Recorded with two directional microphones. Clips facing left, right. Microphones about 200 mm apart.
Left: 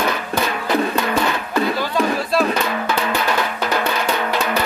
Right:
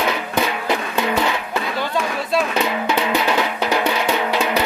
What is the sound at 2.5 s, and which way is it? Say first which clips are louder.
Drum: right 1 dB; 15° right (ahead or behind).